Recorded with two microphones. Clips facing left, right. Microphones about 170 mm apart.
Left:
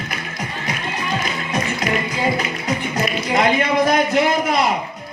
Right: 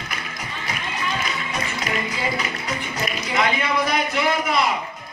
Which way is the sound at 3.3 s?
45° left (ahead or behind).